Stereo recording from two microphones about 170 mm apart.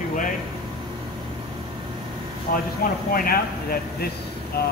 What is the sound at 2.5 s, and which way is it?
Speech, 55° left (ahead or behind).